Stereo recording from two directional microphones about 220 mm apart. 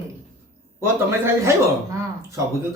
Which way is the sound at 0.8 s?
10° right (ahead or behind).